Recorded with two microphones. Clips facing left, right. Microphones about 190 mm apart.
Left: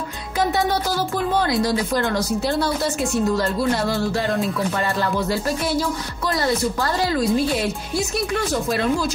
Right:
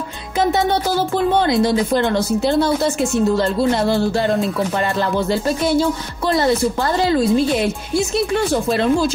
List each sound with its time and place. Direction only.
0.4 s speech: 25° right (ahead or behind)
5.3 s speech: 25° right (ahead or behind)